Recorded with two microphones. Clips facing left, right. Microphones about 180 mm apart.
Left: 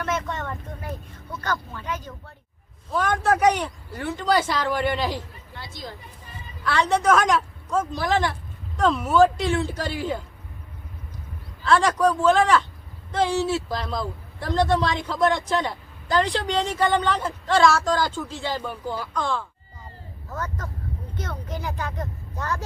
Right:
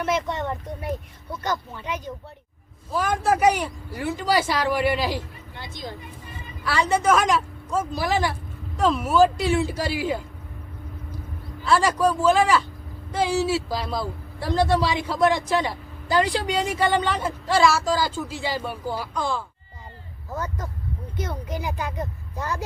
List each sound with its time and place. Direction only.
0.0 s a man's voice: 15° right (ahead or behind)
2.9 s a man's voice: 5° right (ahead or behind)
5.5 s speech: 20° right (ahead or behind)
6.7 s a woman's voice: 5° right (ahead or behind)
11.6 s a woman's voice: 5° right (ahead or behind)